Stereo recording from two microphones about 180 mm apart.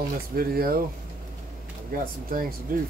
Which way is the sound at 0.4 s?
55° right (ahead or behind).